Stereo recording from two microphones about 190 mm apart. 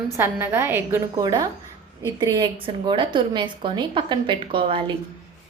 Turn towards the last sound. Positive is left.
turn(degrees=-25)  # may be behind; listen again after turning